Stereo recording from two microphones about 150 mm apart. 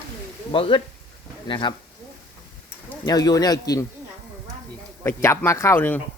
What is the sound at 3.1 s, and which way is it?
Speech, 25° left (ahead or behind).